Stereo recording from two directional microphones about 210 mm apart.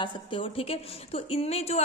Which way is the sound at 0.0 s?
25° left (ahead or behind).